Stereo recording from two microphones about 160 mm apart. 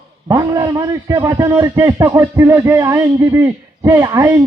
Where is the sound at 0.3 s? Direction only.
20° right (ahead or behind).